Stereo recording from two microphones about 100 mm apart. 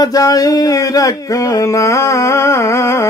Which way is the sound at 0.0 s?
35° left (ahead or behind).